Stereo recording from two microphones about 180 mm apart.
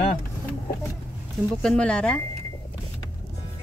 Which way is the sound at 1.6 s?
5° left (ahead or behind).